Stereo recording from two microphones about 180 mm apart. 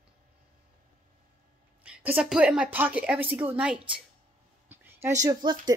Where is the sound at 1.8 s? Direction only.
5° right (ahead or behind).